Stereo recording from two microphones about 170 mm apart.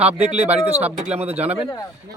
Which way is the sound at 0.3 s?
40° right (ahead or behind).